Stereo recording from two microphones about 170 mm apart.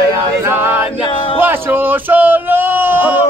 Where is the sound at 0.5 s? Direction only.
10° right (ahead or behind).